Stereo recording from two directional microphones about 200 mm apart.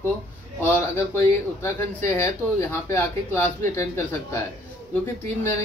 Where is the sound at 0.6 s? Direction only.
10° left (ahead or behind).